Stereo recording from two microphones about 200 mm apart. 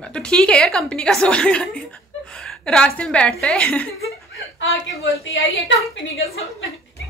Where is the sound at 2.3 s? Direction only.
5° left (ahead or behind).